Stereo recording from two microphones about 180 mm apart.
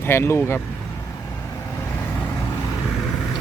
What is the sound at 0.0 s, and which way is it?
Speech, 15° left (ahead or behind).